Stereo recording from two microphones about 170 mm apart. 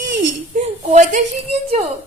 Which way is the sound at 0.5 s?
45° right (ahead or behind).